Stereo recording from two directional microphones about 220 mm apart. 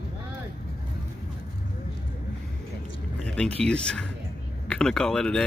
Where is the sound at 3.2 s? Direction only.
5° left (ahead or behind).